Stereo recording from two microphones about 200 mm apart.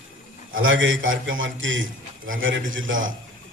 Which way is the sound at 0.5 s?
75° right (ahead or behind).